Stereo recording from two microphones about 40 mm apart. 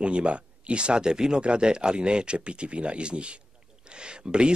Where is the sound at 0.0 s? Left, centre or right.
Right.